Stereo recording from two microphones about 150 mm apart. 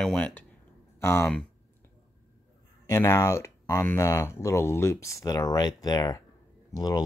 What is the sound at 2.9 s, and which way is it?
Speech, 20° left (ahead or behind).